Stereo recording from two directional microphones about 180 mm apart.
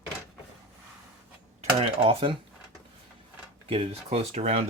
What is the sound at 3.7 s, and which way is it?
Speech, 35° right (ahead or behind).